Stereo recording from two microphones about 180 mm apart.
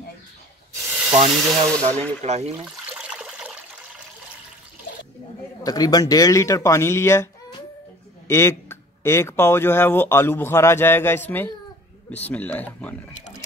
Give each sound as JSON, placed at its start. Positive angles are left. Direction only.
{"t": 0.8, "sound": "hiss", "side_deg": -5}
{"t": 1.3, "sound": "speech", "side_deg": 0}
{"t": 2.2, "sound": "speech", "side_deg": -35}
{"t": 2.5, "sound": "water", "side_deg": -5}
{"t": 5.6, "sound": "speech", "side_deg": 20}